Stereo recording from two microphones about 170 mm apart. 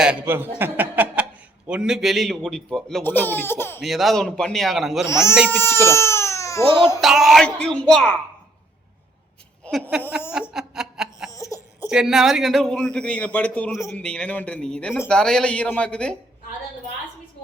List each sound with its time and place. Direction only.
0.0 s a man's voice: 10° right (ahead or behind); by 3.8 s 15° left (ahead or behind)
3.8 s a man's voice: centre (ahead or behind)
5.0 s speech: 15° left (ahead or behind)
7.0 s a man's voice: centre (ahead or behind)
9.6 s a sound: 10° left (ahead or behind)
10.3 s snicker: 5° right (ahead or behind)
11.3 s a sound: 20° left (ahead or behind)
11.8 s a man's voice: 5° right (ahead or behind)